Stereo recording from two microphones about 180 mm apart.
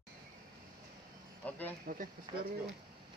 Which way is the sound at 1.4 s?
10° left (ahead or behind).